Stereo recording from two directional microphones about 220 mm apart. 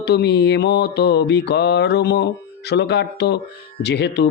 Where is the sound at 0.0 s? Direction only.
50° left (ahead or behind).